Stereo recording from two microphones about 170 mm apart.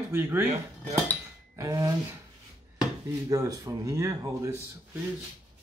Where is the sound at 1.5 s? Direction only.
20° right (ahead or behind).